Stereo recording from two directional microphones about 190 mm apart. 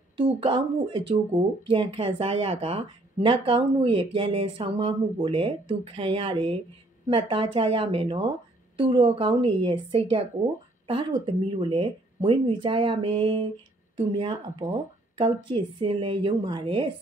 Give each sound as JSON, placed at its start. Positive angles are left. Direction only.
{"t": 0.4, "sound": "speech", "side_deg": -25}